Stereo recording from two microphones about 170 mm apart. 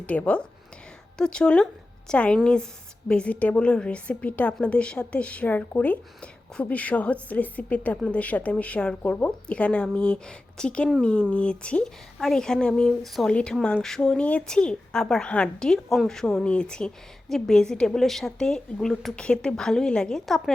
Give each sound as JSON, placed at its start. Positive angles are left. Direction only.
{"t": 0.0, "sound": "a woman's voice", "side_deg": 10}